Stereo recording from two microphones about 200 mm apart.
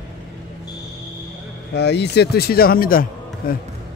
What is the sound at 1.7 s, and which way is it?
A man's voice, 55° left (ahead or behind).